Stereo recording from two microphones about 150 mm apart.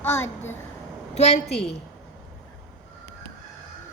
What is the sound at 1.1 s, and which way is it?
Speech, 45° left (ahead or behind).